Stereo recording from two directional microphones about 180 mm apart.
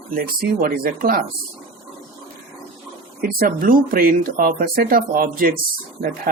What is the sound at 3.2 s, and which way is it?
Speech, 55° right (ahead or behind).